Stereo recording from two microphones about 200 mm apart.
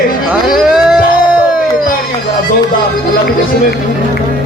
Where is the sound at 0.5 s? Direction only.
5° right (ahead or behind).